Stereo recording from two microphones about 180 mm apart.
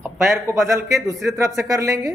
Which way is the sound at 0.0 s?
15° right (ahead or behind).